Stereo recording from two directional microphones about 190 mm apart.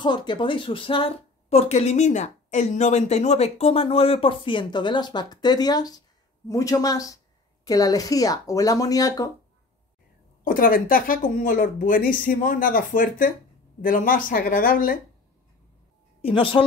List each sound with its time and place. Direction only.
0.0 s a woman's voice: 25° left (ahead or behind)
10.4 s speech: 45° left (ahead or behind)
16.2 s speech: 30° left (ahead or behind)